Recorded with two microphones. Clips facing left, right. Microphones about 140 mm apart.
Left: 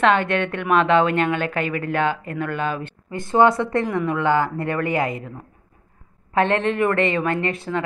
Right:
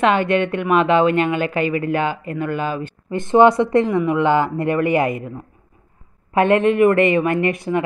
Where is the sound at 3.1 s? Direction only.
20° right (ahead or behind).